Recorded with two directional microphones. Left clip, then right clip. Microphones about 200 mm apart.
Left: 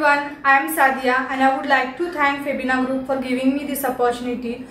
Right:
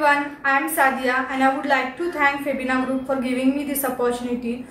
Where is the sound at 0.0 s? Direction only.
Centre (ahead or behind).